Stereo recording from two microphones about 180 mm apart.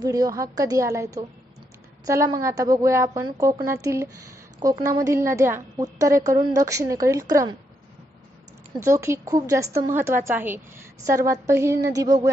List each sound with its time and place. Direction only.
0.0 s a woman's voice: 20° right (ahead or behind)
8.7 s a woman's voice: 15° right (ahead or behind)